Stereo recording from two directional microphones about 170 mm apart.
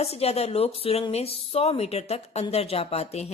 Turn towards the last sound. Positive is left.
turn(degrees=40)  # may be behind; listen again after turning